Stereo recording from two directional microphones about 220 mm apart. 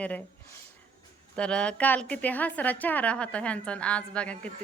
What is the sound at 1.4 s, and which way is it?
A woman's voice, 5° left (ahead or behind).